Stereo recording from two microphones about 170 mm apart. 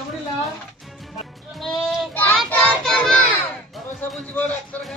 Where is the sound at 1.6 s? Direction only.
Centre (ahead or behind).